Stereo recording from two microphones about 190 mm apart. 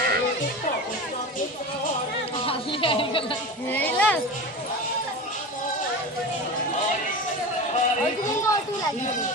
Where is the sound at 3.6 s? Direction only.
10° left (ahead or behind).